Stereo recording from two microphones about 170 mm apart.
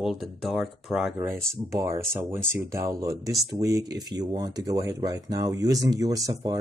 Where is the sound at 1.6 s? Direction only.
15° right (ahead or behind).